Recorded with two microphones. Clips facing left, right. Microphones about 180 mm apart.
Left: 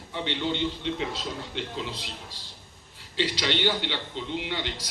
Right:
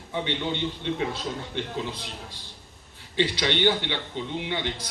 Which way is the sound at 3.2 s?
55° right (ahead or behind).